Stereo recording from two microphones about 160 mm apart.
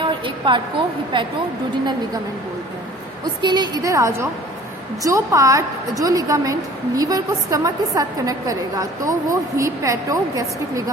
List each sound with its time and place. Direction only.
0.0 s a sound: 30° right (ahead or behind)
1.1 s a woman's voice: 30° right (ahead or behind)
3.4 s a woman's voice: 25° right (ahead or behind)